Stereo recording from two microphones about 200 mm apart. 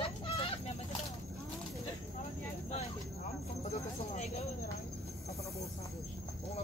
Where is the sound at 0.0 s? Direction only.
30° left (ahead or behind).